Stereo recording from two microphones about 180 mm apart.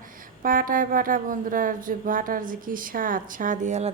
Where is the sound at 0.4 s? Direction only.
50° right (ahead or behind).